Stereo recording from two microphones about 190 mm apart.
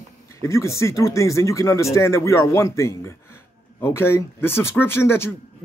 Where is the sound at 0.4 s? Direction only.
15° left (ahead or behind).